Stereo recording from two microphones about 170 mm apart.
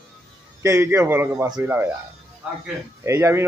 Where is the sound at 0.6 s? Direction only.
15° right (ahead or behind).